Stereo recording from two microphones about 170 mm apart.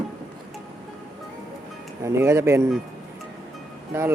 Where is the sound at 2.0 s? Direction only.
15° right (ahead or behind).